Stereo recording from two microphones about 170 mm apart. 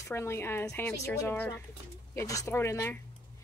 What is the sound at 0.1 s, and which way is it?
A woman's voice, 15° left (ahead or behind).